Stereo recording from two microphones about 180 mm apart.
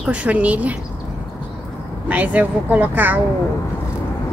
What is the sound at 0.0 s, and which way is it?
Speech, 5° right (ahead or behind).